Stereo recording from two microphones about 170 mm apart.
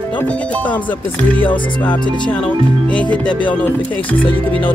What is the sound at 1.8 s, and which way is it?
Speech, 10° left (ahead or behind).